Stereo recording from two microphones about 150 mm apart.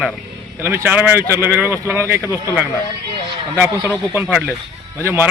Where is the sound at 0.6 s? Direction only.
15° right (ahead or behind).